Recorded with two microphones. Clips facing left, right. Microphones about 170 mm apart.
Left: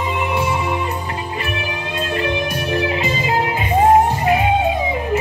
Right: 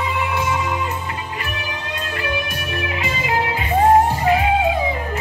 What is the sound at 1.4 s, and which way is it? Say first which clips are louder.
Music: left 4 dB; 30° left (ahead or behind).